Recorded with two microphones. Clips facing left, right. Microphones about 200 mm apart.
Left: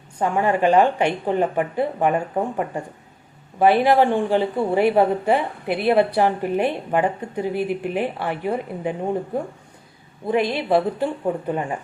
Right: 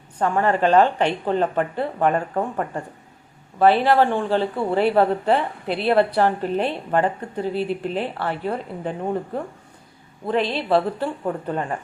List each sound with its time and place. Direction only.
0.2 s a woman's voice: 10° left (ahead or behind)